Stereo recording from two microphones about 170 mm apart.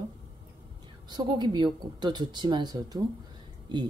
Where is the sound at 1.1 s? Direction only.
25° right (ahead or behind).